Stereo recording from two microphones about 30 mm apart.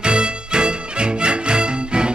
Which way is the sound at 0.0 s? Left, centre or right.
Right.